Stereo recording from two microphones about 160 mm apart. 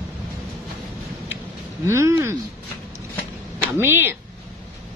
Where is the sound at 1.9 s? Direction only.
15° right (ahead or behind).